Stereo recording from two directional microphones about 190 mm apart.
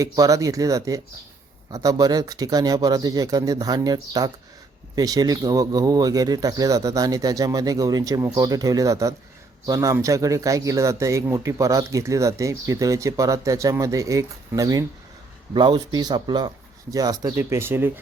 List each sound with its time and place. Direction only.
0.0 s speech: 15° right (ahead or behind)